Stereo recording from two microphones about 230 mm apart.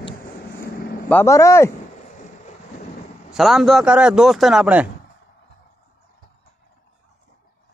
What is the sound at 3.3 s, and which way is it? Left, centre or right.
A man's voice, centre.